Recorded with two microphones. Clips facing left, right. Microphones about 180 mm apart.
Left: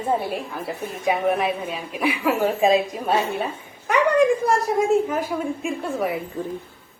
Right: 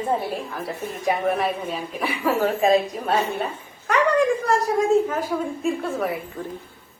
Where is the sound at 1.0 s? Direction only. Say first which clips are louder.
Left 1 dB; centre (ahead or behind).